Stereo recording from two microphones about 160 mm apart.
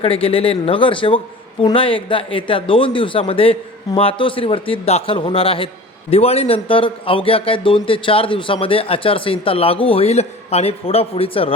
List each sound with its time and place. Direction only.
0.0 s a man's voice: 35° left (ahead or behind)